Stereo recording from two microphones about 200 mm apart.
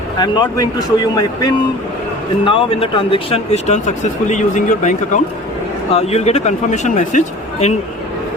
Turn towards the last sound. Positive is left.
turn(degrees=35)  # may be behind; listen again after turning